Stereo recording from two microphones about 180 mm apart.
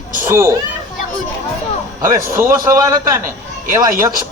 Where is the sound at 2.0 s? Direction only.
15° right (ahead or behind).